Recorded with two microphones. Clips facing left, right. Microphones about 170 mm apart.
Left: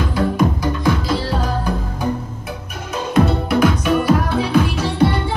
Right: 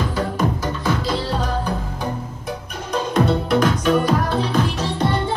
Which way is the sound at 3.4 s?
10° left (ahead or behind).